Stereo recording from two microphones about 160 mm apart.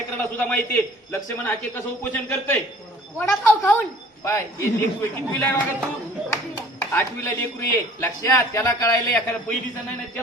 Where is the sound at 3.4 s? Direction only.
15° left (ahead or behind).